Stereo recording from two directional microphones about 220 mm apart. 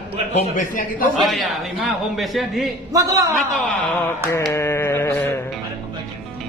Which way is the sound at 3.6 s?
5° left (ahead or behind).